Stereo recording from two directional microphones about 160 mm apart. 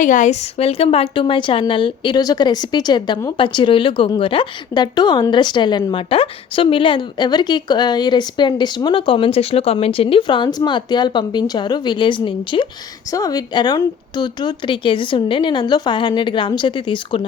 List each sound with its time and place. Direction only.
0.0 s a woman's voice: 50° left (ahead or behind); by 17.2 s 30° left (ahead or behind)